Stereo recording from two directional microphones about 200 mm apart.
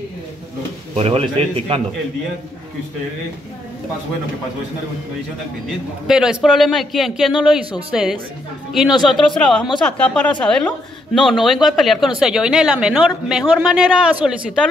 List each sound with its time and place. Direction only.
0.9 s a man's voice: 30° right (ahead or behind)
6.0 s a woman's voice: centre (ahead or behind)